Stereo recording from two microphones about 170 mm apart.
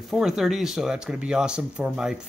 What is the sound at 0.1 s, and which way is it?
Speech, centre (ahead or behind).